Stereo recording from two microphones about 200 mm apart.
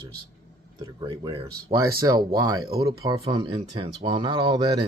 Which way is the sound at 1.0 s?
25° right (ahead or behind).